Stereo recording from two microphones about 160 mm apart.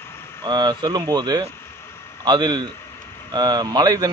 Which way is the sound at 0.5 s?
25° right (ahead or behind).